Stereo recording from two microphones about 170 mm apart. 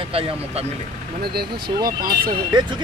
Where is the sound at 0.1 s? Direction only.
35° right (ahead or behind).